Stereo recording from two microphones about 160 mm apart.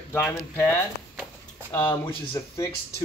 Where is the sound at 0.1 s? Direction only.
15° left (ahead or behind).